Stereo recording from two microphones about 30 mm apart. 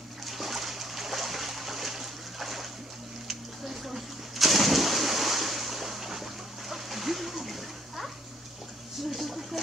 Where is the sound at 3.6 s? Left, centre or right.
Centre.